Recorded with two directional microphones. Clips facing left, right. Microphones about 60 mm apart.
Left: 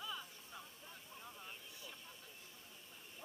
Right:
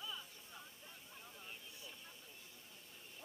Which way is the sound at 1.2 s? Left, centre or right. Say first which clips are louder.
Left 4 dB; left.